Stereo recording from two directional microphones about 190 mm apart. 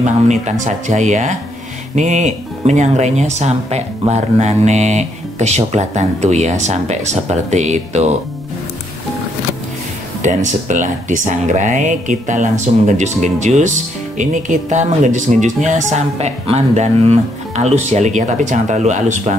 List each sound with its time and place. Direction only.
0.0 s speech: 40° right (ahead or behind)
10.2 s speech: 40° right (ahead or behind)